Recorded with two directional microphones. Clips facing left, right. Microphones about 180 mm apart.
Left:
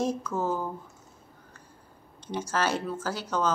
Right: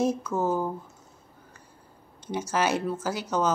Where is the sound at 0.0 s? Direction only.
10° right (ahead or behind).